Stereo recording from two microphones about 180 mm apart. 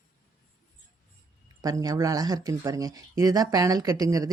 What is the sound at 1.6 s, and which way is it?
Speech, 20° right (ahead or behind).